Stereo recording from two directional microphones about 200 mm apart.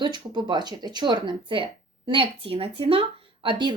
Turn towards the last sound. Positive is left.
turn(degrees=-25)  # may be behind; listen again after turning